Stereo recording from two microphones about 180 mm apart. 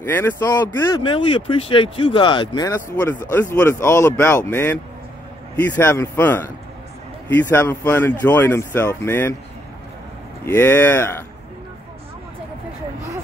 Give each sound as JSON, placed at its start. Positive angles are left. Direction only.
{"t": 0.1, "sound": "speech", "side_deg": 15}
{"t": 1.0, "sound": "speech", "side_deg": 30}
{"t": 5.8, "sound": "speech", "side_deg": 10}
{"t": 10.4, "sound": "speech", "side_deg": 10}